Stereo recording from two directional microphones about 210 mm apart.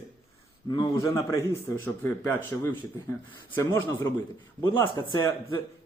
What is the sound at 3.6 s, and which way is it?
A man's voice, 15° left (ahead or behind).